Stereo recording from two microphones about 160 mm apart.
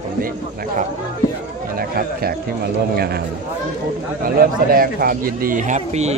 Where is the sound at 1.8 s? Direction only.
70° right (ahead or behind).